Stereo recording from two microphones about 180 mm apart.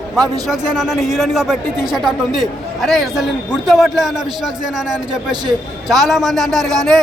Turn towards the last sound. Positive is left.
turn(degrees=0)  # may be behind; listen again after turning